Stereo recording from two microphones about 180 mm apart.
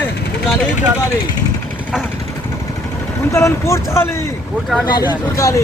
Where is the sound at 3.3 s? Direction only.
15° left (ahead or behind).